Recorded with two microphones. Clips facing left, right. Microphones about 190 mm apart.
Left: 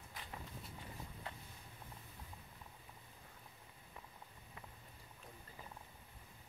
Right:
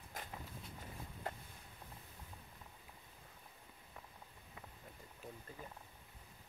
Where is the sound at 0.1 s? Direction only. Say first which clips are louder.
Right 5 dB; 45° right (ahead or behind).